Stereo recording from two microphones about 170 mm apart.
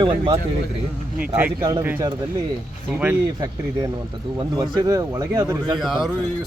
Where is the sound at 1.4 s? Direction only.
10° right (ahead or behind).